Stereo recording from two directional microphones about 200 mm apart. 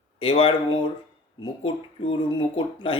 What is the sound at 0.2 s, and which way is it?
A man's voice, 30° left (ahead or behind).